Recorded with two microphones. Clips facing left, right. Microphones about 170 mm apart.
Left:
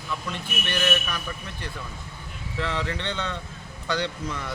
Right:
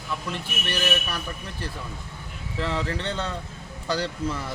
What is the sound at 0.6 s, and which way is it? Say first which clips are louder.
Speech: left 1 dB; 35° right (ahead or behind).